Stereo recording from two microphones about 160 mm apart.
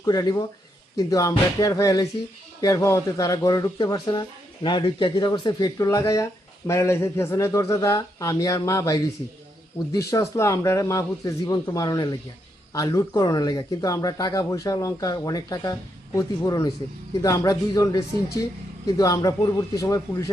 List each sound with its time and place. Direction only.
0.0 s speech: 25° left (ahead or behind)